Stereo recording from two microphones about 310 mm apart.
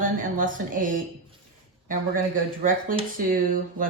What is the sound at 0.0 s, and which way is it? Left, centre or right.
Speech, right.